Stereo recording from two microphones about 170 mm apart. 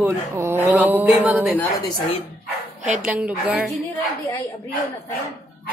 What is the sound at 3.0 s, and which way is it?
Speech, 10° right (ahead or behind).